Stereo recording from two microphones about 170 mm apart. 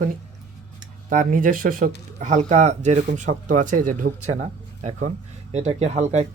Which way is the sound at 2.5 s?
40° right (ahead or behind).